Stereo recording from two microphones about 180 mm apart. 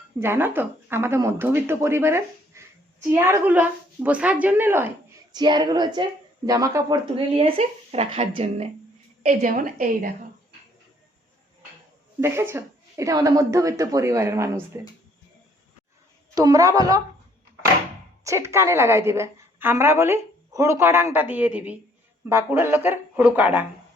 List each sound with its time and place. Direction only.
0.2 s speech: 10° right (ahead or behind)
5.3 s a woman's voice: 25° right (ahead or behind)
7.3 s a woman's voice: 30° right (ahead or behind); by 10.1 s 50° right (ahead or behind)
12.2 s speech: 15° right (ahead or behind)
16.3 s a woman's voice: 20° right (ahead or behind)
18.2 s speech: 15° right (ahead or behind)